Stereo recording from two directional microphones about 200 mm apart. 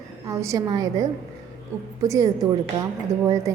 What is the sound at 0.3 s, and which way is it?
Speech, 15° right (ahead or behind).